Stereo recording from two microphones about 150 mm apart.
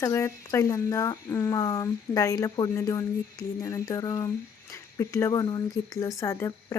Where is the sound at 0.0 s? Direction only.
20° left (ahead or behind).